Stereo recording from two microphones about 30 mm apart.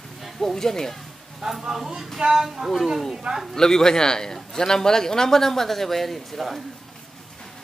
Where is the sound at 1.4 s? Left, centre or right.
Centre.